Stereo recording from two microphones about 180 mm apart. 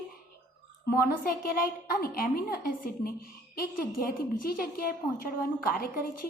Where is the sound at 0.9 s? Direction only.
55° left (ahead or behind).